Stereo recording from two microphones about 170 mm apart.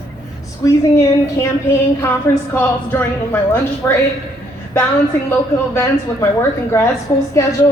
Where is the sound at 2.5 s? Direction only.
15° left (ahead or behind).